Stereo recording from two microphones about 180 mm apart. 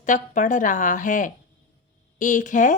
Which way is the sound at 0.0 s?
45° left (ahead or behind).